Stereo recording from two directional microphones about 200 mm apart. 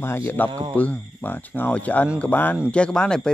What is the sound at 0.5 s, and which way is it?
Speech, 25° right (ahead or behind).